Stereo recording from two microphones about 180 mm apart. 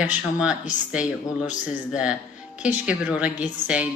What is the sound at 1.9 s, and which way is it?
Speech, 5° right (ahead or behind).